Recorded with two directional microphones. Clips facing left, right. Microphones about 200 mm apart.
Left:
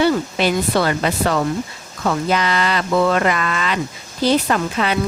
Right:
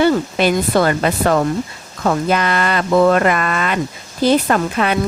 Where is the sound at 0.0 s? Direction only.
50° right (ahead or behind).